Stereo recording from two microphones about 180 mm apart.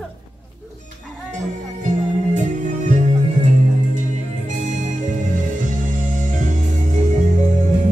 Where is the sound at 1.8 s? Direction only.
45° right (ahead or behind).